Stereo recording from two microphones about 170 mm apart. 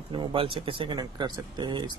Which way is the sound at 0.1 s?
30° right (ahead or behind).